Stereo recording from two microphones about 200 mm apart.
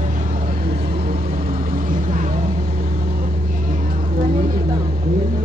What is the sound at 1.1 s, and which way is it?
Vehicle, 30° right (ahead or behind).